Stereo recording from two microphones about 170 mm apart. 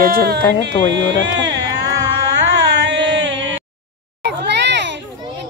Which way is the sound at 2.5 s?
90° right.